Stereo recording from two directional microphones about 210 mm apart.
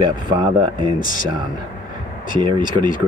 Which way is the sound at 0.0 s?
20° right (ahead or behind).